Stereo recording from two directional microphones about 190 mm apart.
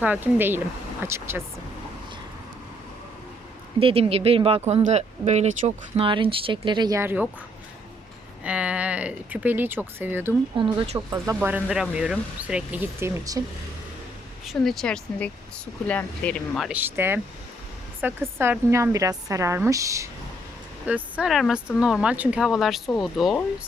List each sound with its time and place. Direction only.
0.0 s speech: 10° right (ahead or behind)
3.8 s speech: 30° right (ahead or behind); by 7.3 s 10° right (ahead or behind)
8.4 s speech: 5° right (ahead or behind)
10.6 s speech: 20° right (ahead or behind)
14.6 s speech: centre (ahead or behind); by 20.1 s 15° right (ahead or behind)
20.8 s speech: 5° right (ahead or behind)